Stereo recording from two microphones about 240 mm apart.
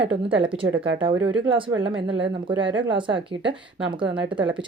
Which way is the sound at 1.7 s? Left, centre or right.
Right.